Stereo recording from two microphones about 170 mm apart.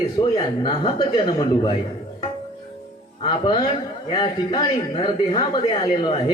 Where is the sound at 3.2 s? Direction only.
25° left (ahead or behind).